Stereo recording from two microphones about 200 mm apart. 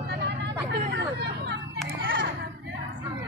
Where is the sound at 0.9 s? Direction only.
60° right (ahead or behind).